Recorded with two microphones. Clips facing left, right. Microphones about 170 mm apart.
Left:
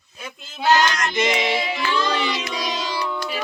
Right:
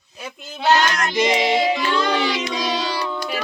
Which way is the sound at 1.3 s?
25° right (ahead or behind).